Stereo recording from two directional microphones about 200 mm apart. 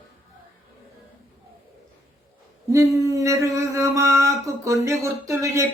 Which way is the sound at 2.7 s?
15° right (ahead or behind).